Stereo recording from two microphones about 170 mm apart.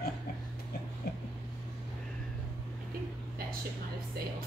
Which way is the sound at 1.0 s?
70° left (ahead or behind).